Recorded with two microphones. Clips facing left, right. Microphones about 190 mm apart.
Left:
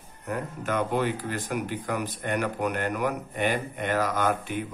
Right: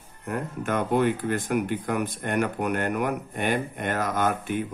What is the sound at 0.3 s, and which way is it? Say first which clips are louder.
Speech: right 2 dB; 50° right (ahead or behind).